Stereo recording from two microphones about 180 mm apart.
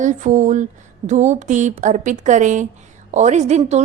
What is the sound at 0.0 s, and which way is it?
A woman's voice, 45° right (ahead or behind).